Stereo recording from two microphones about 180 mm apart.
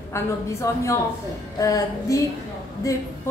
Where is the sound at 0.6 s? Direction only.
15° left (ahead or behind).